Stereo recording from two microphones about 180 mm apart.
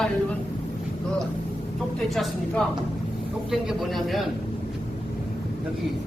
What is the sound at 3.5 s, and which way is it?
Speech, centre (ahead or behind).